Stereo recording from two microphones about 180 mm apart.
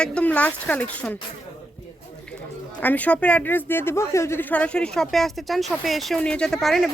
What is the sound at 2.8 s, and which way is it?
Speech, 10° left (ahead or behind).